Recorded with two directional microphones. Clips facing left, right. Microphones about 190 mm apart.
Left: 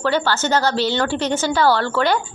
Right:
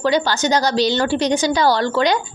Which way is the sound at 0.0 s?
15° right (ahead or behind).